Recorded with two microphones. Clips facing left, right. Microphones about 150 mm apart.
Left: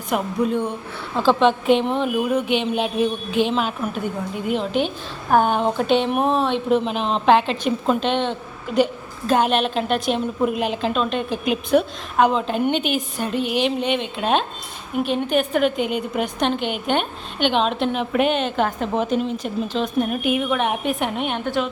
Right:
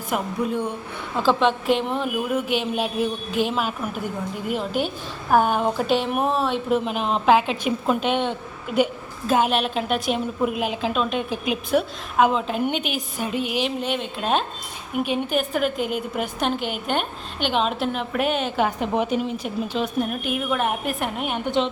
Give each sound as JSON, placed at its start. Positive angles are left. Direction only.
{"t": 0.1, "sound": "a woman's voice", "side_deg": -5}
{"t": 20.1, "sound": "a woman's voice", "side_deg": 0}
{"t": 21.4, "sound": "a woman's voice", "side_deg": -20}